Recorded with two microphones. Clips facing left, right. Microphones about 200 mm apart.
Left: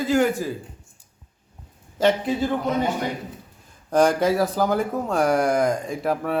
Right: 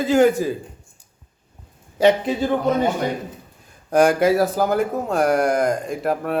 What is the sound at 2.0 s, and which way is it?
Speech, 20° right (ahead or behind).